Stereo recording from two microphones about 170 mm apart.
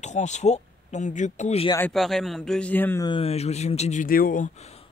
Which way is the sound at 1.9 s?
Centre (ahead or behind).